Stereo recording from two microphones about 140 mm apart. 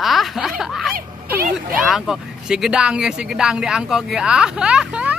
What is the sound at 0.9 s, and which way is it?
Speech, 90° right.